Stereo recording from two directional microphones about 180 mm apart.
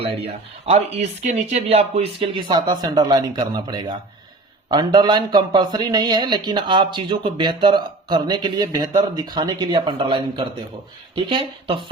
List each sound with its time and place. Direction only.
0.0 s a man's voice: 35° right (ahead or behind)